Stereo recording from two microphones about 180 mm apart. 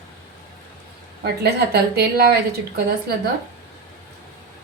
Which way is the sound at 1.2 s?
65° right (ahead or behind).